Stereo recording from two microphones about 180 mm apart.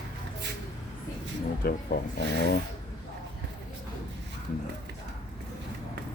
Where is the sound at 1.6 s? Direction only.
55° left (ahead or behind).